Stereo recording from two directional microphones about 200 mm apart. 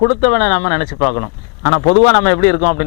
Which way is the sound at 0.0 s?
20° left (ahead or behind).